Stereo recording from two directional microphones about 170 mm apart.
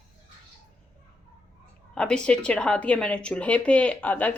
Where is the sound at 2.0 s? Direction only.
5° left (ahead or behind).